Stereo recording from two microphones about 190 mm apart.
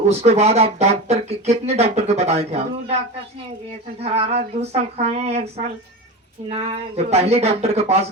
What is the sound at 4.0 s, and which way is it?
Speech, 30° right (ahead or behind).